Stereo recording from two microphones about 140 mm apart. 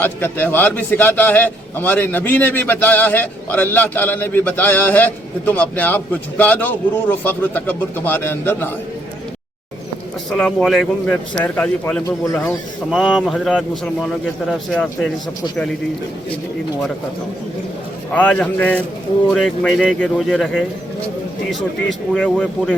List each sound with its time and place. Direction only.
0.0 s a man's voice: 15° left (ahead or behind)
10.2 s a man's voice: 5° left (ahead or behind)
12.0 s speech: 20° left (ahead or behind)
12.9 s a man's voice: 5° right (ahead or behind)
18.1 s a man's voice: 10° left (ahead or behind)
22.1 s a man's voice: 5° left (ahead or behind)